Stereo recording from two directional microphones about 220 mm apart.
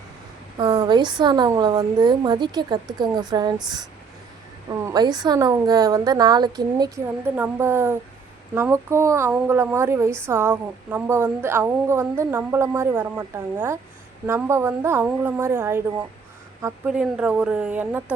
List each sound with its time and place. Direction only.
0.5 s a woman's voice: 20° right (ahead or behind)